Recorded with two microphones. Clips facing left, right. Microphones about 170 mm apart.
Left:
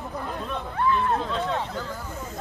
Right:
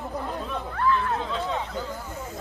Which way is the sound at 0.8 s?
20° left (ahead or behind).